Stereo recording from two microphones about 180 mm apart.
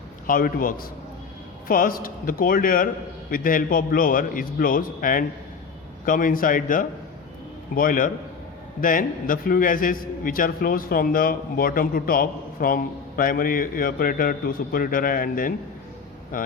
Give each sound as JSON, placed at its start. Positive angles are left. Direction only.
{"t": 0.3, "sound": "a man's voice", "side_deg": 50}